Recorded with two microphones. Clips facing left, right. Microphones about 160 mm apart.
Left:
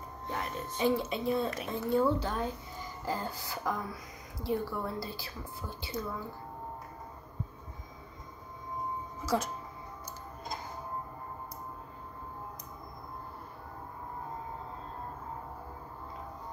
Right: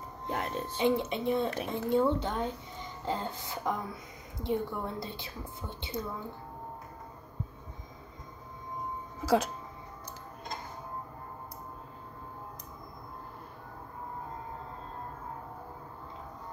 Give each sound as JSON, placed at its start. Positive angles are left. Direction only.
{"t": 0.4, "sound": "a woman's voice", "side_deg": -25}